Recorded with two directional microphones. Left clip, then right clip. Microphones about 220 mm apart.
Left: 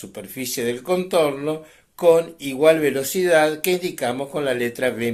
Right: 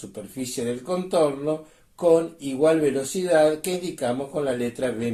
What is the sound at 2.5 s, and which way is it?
Speech, 15° left (ahead or behind).